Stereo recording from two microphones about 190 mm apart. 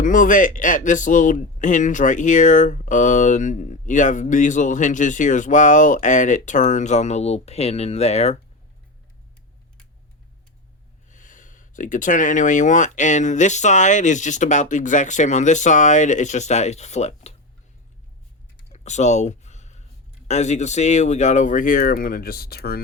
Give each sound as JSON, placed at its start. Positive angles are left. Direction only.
{"t": 0.0, "sound": "a man's voice", "side_deg": 45}
{"t": 11.1, "sound": "a man's voice", "side_deg": 45}
{"t": 18.7, "sound": "a sound", "side_deg": 35}
{"t": 20.2, "sound": "speech", "side_deg": 35}